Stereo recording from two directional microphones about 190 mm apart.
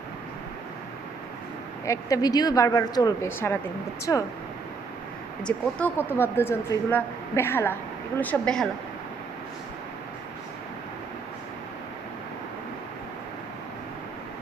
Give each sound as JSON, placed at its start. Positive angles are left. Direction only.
{"t": 1.8, "sound": "speech", "side_deg": 15}
{"t": 5.5, "sound": "speech", "side_deg": 10}